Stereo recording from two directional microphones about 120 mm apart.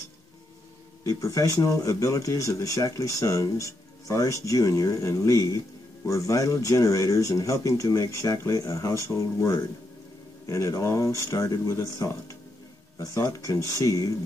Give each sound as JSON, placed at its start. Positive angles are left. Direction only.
{"t": 1.0, "sound": "speech", "side_deg": 30}